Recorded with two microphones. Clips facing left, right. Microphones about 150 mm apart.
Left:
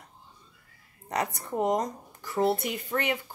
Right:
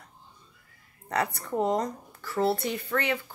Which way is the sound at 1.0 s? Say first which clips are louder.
Right 1 dB; 20° left (ahead or behind).